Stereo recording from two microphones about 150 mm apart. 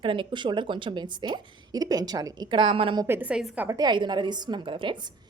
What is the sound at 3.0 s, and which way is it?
Speech, 15° right (ahead or behind).